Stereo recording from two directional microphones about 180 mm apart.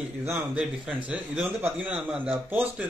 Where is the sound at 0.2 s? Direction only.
15° right (ahead or behind).